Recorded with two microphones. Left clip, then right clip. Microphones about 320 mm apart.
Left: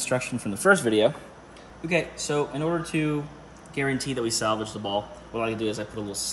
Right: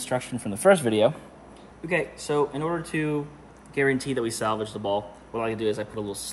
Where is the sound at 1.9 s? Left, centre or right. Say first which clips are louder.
Even; centre.